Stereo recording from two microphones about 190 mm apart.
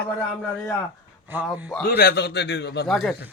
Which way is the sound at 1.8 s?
55° left (ahead or behind).